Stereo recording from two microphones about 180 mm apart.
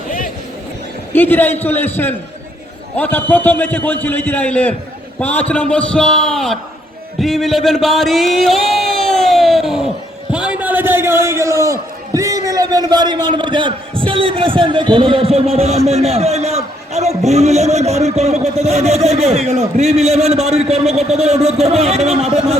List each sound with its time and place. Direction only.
1.1 s a man's voice: 10° left (ahead or behind)
7.2 s a sound: centre (ahead or behind)
10.3 s a man's voice: 5° right (ahead or behind); by 22.5 s 35° right (ahead or behind)